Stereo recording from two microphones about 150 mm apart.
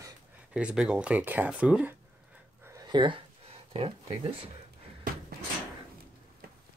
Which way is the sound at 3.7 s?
40° right (ahead or behind).